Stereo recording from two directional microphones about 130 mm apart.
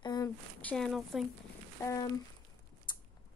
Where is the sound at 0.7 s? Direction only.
Centre (ahead or behind).